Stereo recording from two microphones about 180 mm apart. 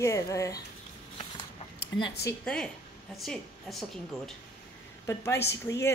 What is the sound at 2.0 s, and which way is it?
Speech, 65° left (ahead or behind).